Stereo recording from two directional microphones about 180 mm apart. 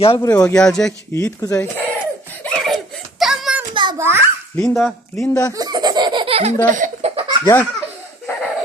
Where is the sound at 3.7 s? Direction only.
25° right (ahead or behind).